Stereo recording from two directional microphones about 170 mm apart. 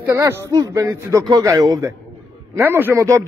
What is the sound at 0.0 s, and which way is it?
A man's voice, 15° right (ahead or behind).